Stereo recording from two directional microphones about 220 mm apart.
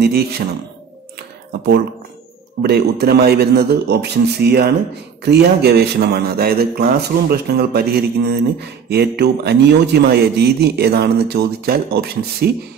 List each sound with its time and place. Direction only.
0.0 s a man's voice: 45° right (ahead or behind)
2.6 s a man's voice: 45° right (ahead or behind)